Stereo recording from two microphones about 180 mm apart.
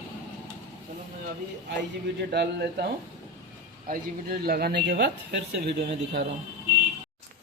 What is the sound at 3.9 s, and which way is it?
Speech, 55° right (ahead or behind).